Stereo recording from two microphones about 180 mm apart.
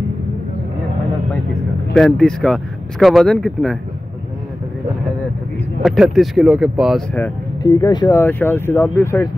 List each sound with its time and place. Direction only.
2.0 s speech: 5° left (ahead or behind)
5.8 s speech: centre (ahead or behind)
7.6 s speech: 20° left (ahead or behind)
8.2 s speech: 10° left (ahead or behind)